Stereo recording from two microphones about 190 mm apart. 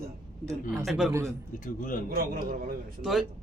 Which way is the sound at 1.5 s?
45° left (ahead or behind).